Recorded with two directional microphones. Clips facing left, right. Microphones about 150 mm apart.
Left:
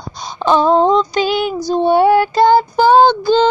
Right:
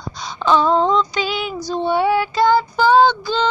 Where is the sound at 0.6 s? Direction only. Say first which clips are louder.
Left 4 dB; 40° left (ahead or behind).